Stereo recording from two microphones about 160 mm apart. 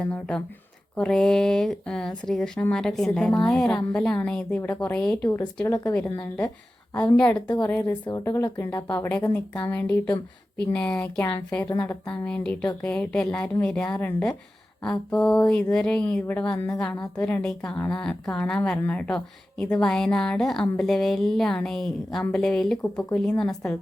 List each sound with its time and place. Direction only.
0.0 s a woman's voice: 5° left (ahead or behind)
7.2 s a woman's voice: 10° left (ahead or behind)
7.4 s a woman's voice: 25° left (ahead or behind)
7.7 s a woman's voice: 10° left (ahead or behind)
8.0 s a woman's voice: 20° left (ahead or behind)
9.7 s a woman's voice: 10° left (ahead or behind)